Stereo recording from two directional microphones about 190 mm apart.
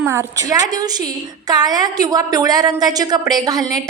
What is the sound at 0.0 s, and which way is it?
A woman's voice, 15° right (ahead or behind).